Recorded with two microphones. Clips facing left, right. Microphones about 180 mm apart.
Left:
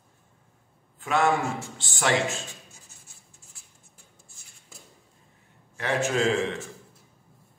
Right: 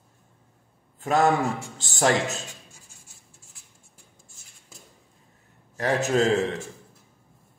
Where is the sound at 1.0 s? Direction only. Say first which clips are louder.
Right 3 dB; 40° right (ahead or behind).